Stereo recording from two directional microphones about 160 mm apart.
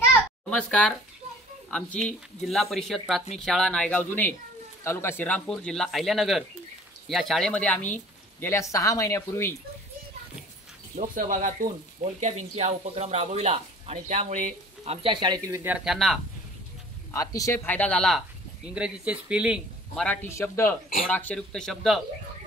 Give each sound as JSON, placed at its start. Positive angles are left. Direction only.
{"t": 0.5, "sound": "speech", "side_deg": 5}
{"t": 11.0, "sound": "speech", "side_deg": -55}
{"t": 15.0, "sound": "speech", "side_deg": -30}
{"t": 17.1, "sound": "speech", "side_deg": 20}
{"t": 18.8, "sound": "speech", "side_deg": -10}
{"t": 20.2, "sound": "speech", "side_deg": 15}